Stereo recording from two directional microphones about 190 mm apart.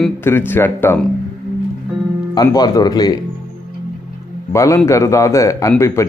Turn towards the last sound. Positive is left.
turn(degrees=15)  # may be behind; listen again after turning